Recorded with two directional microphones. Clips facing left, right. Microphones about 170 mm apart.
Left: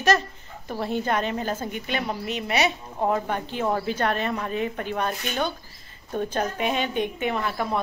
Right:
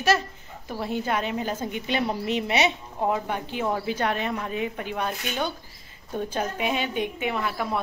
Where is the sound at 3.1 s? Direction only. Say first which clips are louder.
Left 2 dB; 10° right (ahead or behind).